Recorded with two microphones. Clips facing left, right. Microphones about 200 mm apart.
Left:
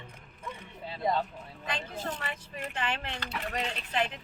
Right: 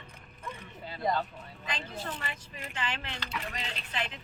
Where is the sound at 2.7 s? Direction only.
55° left (ahead or behind).